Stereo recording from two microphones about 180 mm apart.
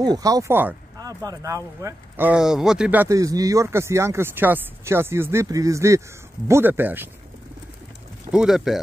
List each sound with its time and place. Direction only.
0.0 s speech: 20° right (ahead or behind)
8.3 s speech: 5° right (ahead or behind)